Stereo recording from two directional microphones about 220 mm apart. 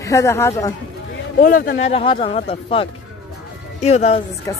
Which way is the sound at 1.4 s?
40° left (ahead or behind).